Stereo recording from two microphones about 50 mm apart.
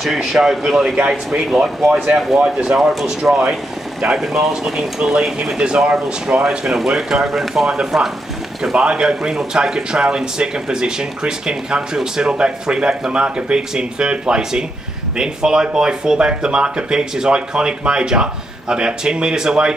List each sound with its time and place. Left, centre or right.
0.0 s speech: centre
2.4 s speech: centre
2.8 s speech: centre